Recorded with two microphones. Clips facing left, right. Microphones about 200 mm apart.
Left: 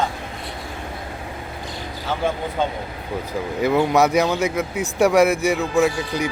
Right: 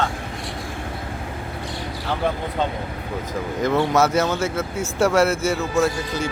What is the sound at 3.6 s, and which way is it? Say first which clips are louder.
Speech: left 2 dB; 10° left (ahead or behind).